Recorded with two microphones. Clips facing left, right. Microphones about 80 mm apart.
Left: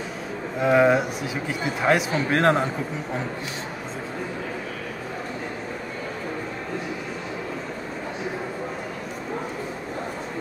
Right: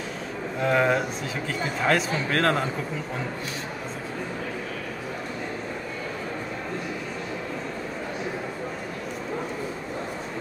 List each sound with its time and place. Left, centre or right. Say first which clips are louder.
0.6 s speech: left 4 dB; centre